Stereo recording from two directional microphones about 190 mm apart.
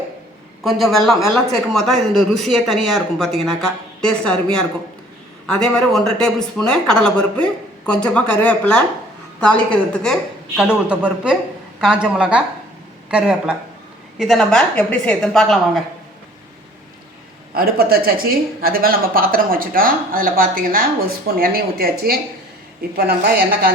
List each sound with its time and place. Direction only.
0.6 s speech: centre (ahead or behind)
5.5 s speech: 5° left (ahead or behind)
10.6 s speech: 5° right (ahead or behind)
17.5 s speech: 50° right (ahead or behind)